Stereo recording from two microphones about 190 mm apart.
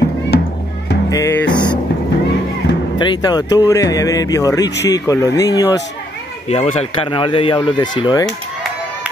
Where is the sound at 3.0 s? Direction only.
25° left (ahead or behind).